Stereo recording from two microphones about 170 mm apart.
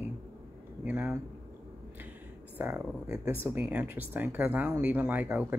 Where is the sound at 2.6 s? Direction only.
10° right (ahead or behind).